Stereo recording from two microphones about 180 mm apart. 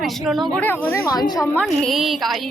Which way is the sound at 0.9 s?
15° left (ahead or behind).